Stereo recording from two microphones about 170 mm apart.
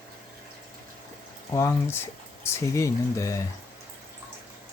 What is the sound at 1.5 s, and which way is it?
Speech, 15° left (ahead or behind).